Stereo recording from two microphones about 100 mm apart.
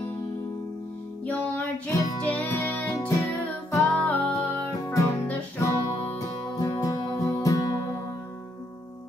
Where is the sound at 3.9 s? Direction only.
15° left (ahead or behind).